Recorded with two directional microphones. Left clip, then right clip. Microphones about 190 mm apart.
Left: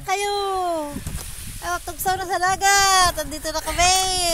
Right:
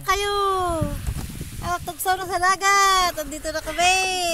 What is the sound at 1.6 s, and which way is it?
Speech, 5° left (ahead or behind).